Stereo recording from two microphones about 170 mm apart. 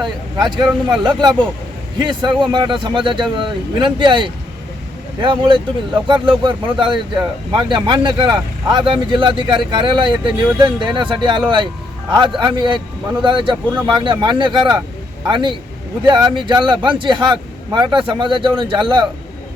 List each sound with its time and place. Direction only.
0.3 s speech: 25° right (ahead or behind)